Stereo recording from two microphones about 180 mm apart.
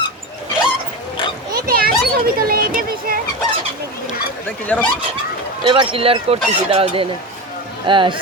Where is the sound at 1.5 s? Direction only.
55° right (ahead or behind).